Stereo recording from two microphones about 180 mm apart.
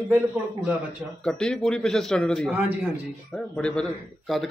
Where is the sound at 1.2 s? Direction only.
5° left (ahead or behind).